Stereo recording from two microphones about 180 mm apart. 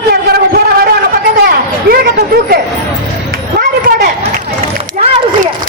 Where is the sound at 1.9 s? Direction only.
60° right (ahead or behind).